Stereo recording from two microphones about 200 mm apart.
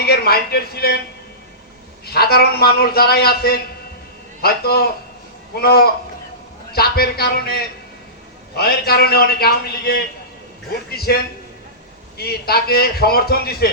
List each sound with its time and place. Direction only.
0.0 s speech: 50° left (ahead or behind)
2.0 s a man's voice: 50° left (ahead or behind)